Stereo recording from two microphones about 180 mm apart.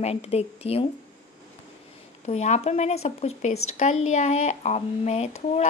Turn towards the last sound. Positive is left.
turn(degrees=35)  # may be behind; listen again after turning